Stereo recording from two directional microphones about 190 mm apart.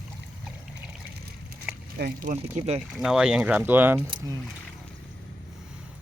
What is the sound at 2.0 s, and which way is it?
Speech, 55° right (ahead or behind).